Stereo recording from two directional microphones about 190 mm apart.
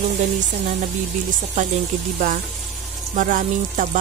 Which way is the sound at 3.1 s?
45° right (ahead or behind).